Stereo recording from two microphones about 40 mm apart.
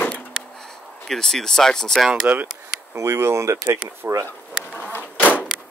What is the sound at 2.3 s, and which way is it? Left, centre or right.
Speech, right.